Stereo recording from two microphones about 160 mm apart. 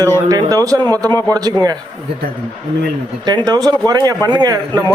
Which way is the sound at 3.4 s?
25° right (ahead or behind).